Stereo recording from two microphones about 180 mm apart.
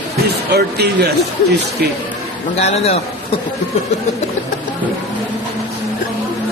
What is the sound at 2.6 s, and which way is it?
Speech, 35° left (ahead or behind).